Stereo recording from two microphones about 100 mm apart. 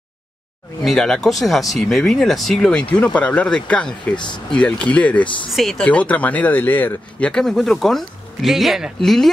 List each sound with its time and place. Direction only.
0.8 s speech: 5° left (ahead or behind)
4.1 s speech: 50° left (ahead or behind)
4.5 s speech: 10° left (ahead or behind)
5.5 s speech: 5° left (ahead or behind)
5.9 s speech: 15° left (ahead or behind)